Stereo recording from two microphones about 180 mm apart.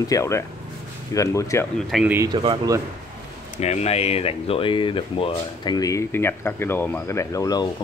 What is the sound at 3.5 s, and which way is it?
Speech, 40° left (ahead or behind).